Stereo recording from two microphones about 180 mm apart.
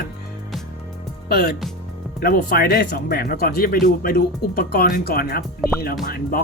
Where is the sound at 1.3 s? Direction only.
60° left (ahead or behind).